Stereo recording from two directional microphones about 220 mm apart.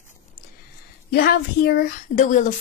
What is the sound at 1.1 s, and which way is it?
Speech, 45° left (ahead or behind).